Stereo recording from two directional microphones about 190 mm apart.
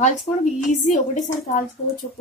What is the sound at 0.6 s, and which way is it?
Speech, 40° left (ahead or behind).